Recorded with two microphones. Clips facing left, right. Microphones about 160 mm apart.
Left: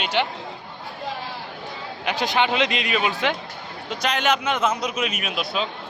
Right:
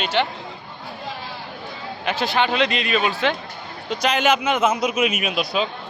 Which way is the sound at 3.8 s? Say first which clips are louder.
Right 3 dB; centre (ahead or behind).